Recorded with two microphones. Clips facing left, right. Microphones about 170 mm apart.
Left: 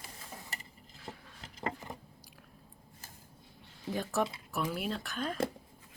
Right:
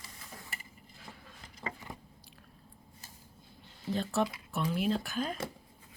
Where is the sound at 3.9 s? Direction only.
10° left (ahead or behind).